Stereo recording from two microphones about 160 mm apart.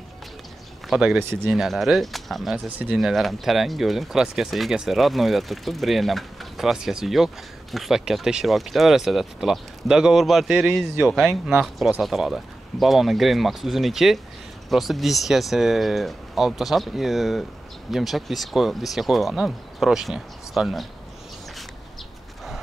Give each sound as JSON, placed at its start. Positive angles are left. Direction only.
{"t": 0.8, "sound": "speech", "side_deg": -5}